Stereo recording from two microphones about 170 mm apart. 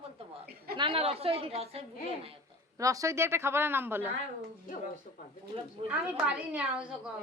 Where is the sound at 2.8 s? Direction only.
20° right (ahead or behind).